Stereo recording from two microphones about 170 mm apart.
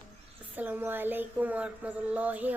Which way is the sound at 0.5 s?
10° right (ahead or behind).